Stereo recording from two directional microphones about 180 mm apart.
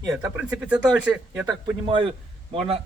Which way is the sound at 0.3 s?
5° right (ahead or behind).